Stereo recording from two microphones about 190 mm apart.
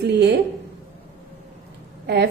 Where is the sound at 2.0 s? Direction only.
60° right (ahead or behind).